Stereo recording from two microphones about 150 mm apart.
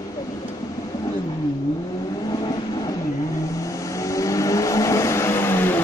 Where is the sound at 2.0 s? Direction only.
25° left (ahead or behind).